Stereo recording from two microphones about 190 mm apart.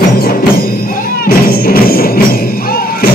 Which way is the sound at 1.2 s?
50° left (ahead or behind).